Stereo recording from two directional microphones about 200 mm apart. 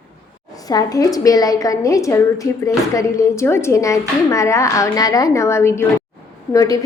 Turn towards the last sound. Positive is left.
turn(degrees=15)  # may be behind; listen again after turning